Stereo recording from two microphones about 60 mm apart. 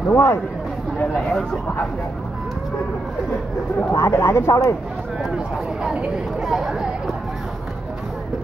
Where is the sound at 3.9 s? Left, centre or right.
Left.